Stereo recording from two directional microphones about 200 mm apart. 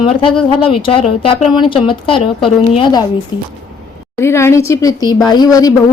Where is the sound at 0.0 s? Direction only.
25° left (ahead or behind).